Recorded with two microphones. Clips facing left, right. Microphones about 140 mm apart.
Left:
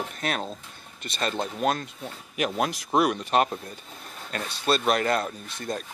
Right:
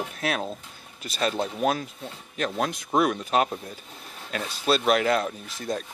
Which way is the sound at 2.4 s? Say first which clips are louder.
Left 1 dB; 5° left (ahead or behind).